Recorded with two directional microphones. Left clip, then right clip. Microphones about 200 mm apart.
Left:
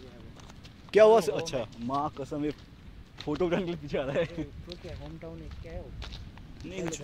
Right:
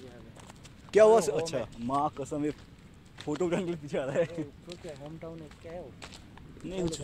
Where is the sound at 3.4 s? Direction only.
20° left (ahead or behind).